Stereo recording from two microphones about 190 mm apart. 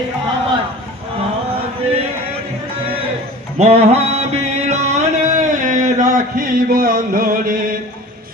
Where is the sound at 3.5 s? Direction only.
35° right (ahead or behind).